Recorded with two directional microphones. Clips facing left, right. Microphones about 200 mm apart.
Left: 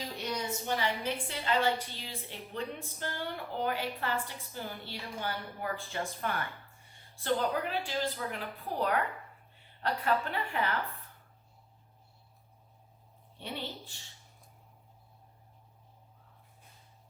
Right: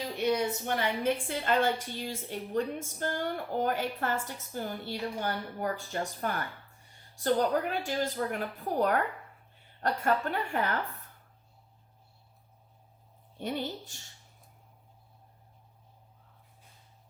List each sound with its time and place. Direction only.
0.3 s a woman's voice: 55° right (ahead or behind)
13.4 s a woman's voice: 45° right (ahead or behind)